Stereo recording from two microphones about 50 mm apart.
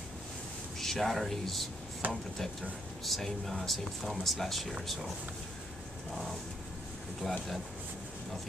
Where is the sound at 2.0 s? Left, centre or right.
Right.